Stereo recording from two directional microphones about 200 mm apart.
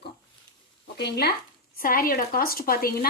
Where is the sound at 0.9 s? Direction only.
55° left (ahead or behind).